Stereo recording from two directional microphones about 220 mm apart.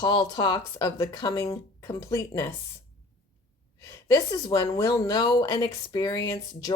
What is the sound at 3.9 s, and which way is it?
A woman's voice, 15° left (ahead or behind).